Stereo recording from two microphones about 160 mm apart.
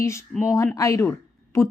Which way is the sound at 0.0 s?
20° left (ahead or behind).